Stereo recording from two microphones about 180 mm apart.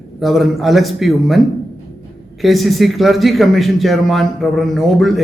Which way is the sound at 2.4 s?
Centre (ahead or behind).